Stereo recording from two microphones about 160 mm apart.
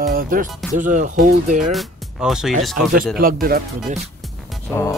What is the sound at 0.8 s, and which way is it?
Speech, 55° right (ahead or behind).